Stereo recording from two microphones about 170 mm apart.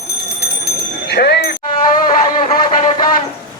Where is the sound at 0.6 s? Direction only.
75° left (ahead or behind).